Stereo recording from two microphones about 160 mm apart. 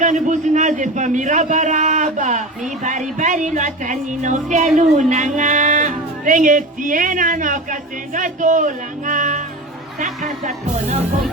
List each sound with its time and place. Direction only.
0.0 s speech: 50° right (ahead or behind)